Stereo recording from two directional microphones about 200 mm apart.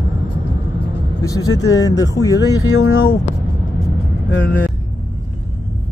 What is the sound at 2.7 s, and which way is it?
Speech, 90° left.